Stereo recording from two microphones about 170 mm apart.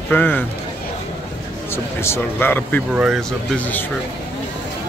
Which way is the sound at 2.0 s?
15° left (ahead or behind).